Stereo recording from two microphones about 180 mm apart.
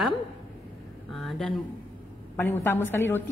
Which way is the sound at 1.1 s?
Centre (ahead or behind).